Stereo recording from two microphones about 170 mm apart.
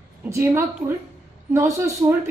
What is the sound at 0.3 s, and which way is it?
A woman's voice, 15° right (ahead or behind).